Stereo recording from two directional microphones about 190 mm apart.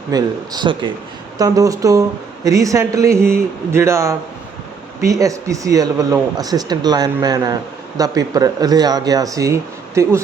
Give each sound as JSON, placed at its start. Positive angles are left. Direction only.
{"t": 0.1, "sound": "speech", "side_deg": -20}